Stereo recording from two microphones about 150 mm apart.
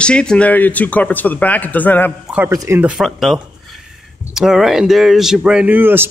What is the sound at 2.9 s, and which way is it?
Speech, centre (ahead or behind).